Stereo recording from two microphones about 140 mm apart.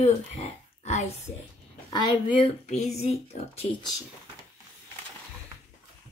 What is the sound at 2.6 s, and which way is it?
A woman's voice, 55° left (ahead or behind).